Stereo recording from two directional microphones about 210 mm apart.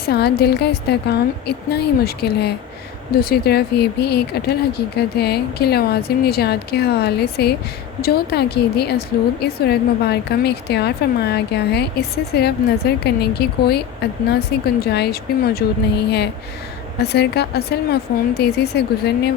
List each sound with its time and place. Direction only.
0.0 s a woman's voice: 50° left (ahead or behind)